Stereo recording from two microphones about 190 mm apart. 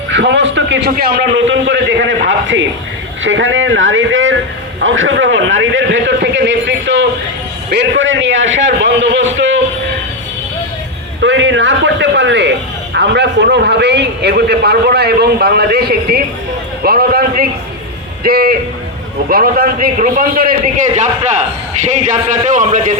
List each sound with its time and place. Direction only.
0.1 s a man's voice: 65° right (ahead or behind)
1.5 s a man's voice: 70° right (ahead or behind)
11.2 s a man's voice: 75° right (ahead or behind); by 23.0 s 40° right (ahead or behind)